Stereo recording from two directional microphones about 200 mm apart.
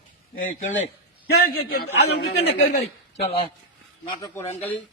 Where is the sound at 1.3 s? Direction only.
55° left (ahead or behind).